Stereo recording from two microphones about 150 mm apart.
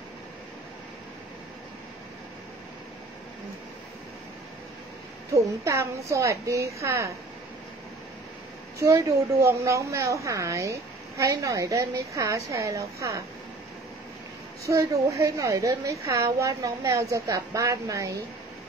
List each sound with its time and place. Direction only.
5.3 s a woman's voice: 20° right (ahead or behind)
8.7 s a woman's voice: 20° right (ahead or behind)
14.7 s a woman's voice: 20° right (ahead or behind)